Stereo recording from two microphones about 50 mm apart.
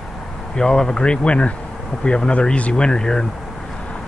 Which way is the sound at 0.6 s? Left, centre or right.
Centre.